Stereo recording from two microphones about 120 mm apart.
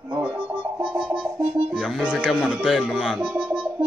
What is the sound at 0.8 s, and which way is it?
Speech, centre (ahead or behind).